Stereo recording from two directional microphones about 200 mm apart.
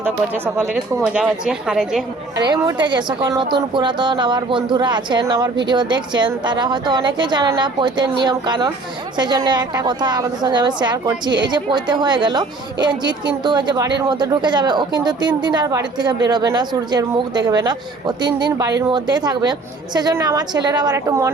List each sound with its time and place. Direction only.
0.6 s a woman's voice: centre (ahead or behind)
2.5 s a woman's voice: 20° right (ahead or behind)